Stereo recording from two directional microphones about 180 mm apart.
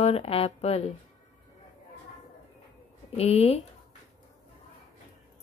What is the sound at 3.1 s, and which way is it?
Speech, 35° left (ahead or behind).